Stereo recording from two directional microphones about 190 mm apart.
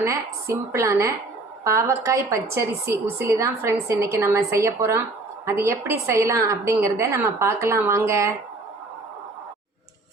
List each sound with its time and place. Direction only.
0.0 s a woman's voice: 15° right (ahead or behind)